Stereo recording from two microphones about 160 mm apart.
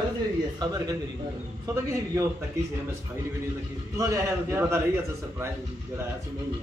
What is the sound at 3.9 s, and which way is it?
Speech, 20° right (ahead or behind).